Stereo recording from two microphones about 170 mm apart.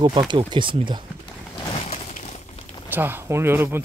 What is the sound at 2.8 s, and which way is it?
Speech, 10° right (ahead or behind).